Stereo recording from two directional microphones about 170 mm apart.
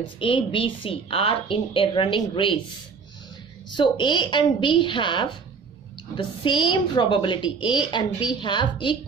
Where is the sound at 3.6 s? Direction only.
25° left (ahead or behind).